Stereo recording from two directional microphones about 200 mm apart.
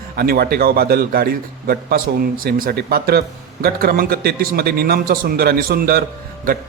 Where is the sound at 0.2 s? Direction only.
50° right (ahead or behind).